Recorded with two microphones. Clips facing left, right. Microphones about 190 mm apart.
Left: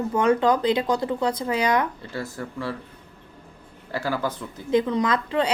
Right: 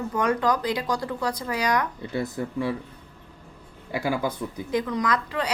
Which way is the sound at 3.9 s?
15° right (ahead or behind).